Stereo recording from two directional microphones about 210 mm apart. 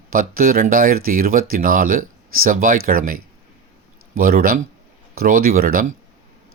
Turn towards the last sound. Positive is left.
turn(degrees=-40)  # may be behind; listen again after turning